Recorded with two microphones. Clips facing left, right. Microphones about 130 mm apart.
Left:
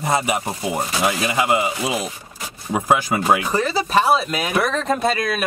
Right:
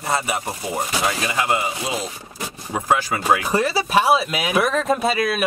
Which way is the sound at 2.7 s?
15° left (ahead or behind).